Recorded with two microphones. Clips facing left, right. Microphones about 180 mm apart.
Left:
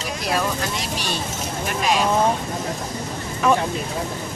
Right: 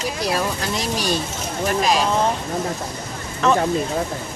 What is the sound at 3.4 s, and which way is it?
Speech, 10° left (ahead or behind).